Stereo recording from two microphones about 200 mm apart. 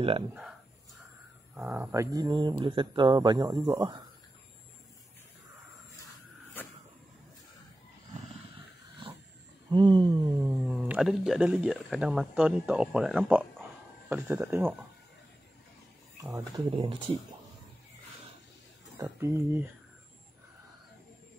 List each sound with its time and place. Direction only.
0.3 s a sound: centre (ahead or behind)
1.5 s speech: 10° right (ahead or behind)
9.7 s speech: 20° right (ahead or behind)
10.7 s speech: 5° right (ahead or behind)
16.2 s speech: 15° right (ahead or behind)
18.9 s speech: 15° right (ahead or behind)